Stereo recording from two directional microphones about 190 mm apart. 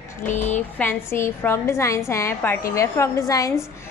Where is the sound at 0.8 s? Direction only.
10° left (ahead or behind).